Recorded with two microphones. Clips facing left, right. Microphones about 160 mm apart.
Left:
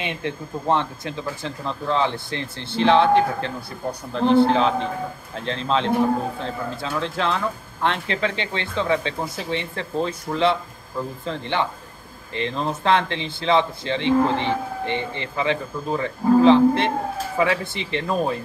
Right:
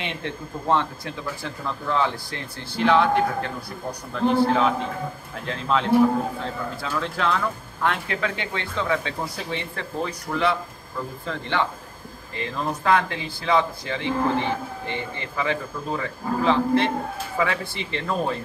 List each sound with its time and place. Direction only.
0.0 s speech: 15° left (ahead or behind)